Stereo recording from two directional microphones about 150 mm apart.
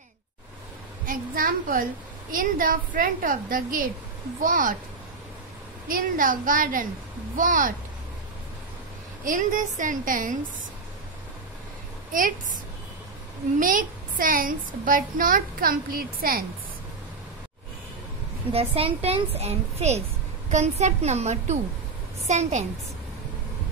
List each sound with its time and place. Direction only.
1.0 s a woman's voice: 70° right (ahead or behind)
5.9 s a woman's voice: 65° right (ahead or behind)
9.2 s a woman's voice: 60° right (ahead or behind)
12.1 s a woman's voice: 65° right (ahead or behind)
13.6 s a child's voice: 65° right (ahead or behind)
18.5 s a child's voice: 40° right (ahead or behind)